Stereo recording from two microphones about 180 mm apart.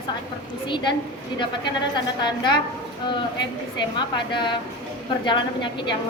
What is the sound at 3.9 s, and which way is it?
A woman's voice, 25° left (ahead or behind).